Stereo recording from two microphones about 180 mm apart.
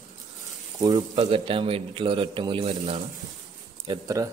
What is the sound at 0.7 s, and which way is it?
Speech, 20° right (ahead or behind).